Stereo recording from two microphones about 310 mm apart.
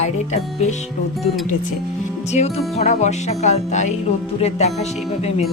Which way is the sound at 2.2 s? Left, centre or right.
Left.